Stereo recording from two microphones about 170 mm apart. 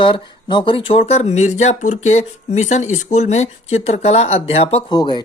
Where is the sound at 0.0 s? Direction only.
30° left (ahead or behind).